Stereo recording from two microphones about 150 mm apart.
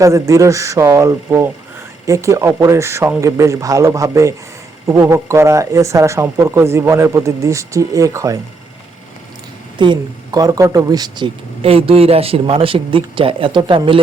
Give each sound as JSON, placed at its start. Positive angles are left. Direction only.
{"t": 0.0, "sound": "speech", "side_deg": -20}
{"t": 9.7, "sound": "speech", "side_deg": -30}
{"t": 11.6, "sound": "speech", "side_deg": -40}